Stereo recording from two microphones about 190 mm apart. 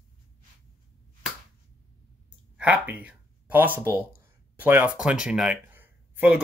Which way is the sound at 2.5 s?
5° right (ahead or behind).